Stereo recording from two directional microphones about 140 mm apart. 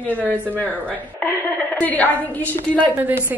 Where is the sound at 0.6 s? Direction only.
10° left (ahead or behind).